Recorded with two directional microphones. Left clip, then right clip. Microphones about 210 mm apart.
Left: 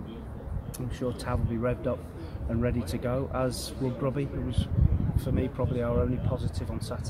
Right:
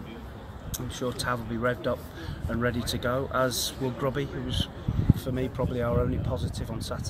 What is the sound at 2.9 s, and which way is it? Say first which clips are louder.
Speech: right 3 dB; 5° right (ahead or behind).